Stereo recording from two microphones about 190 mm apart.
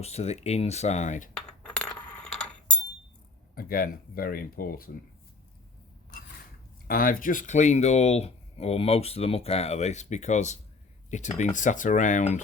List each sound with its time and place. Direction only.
0.0 s speech: 35° left (ahead or behind)
1.3 s a sound: 5° left (ahead or behind)
3.5 s speech: 50° left (ahead or behind)
6.8 s speech: 50° left (ahead or behind)